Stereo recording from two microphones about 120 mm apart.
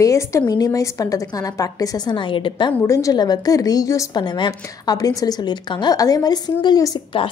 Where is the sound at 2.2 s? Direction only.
45° left (ahead or behind).